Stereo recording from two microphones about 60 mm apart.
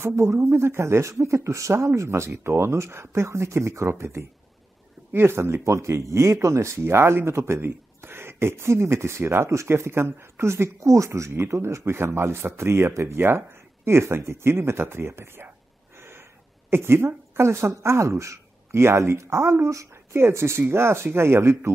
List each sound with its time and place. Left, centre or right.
0.1 s speech: right
16.0 s gasp: right
16.7 s speech: right